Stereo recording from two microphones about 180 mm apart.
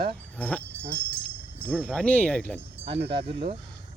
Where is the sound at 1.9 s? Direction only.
5° left (ahead or behind).